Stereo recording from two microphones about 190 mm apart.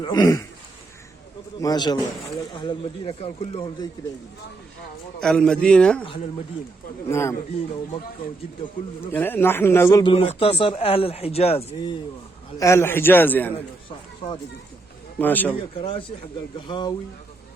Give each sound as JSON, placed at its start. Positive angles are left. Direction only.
{"t": 0.0, "sound": "a man's voice", "side_deg": 20}
{"t": 1.6, "sound": "speech", "side_deg": 20}
{"t": 5.2, "sound": "a man's voice", "side_deg": 5}
{"t": 7.1, "sound": "a man's voice", "side_deg": 15}
{"t": 9.1, "sound": "a man's voice", "side_deg": 10}
{"t": 10.0, "sound": "speech", "side_deg": 30}
{"t": 12.5, "sound": "a man's voice", "side_deg": 15}
{"t": 15.2, "sound": "a man's voice", "side_deg": 10}
{"t": 15.7, "sound": "speech", "side_deg": 30}